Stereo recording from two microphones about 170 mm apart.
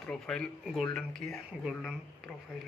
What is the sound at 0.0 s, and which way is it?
Speech, 5° left (ahead or behind).